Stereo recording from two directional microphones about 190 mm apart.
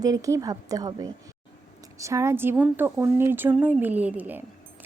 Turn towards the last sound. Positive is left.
turn(degrees=-10)  # may be behind; listen again after turning